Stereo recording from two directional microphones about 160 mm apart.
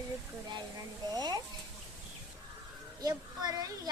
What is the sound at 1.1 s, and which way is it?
Speech, 25° right (ahead or behind).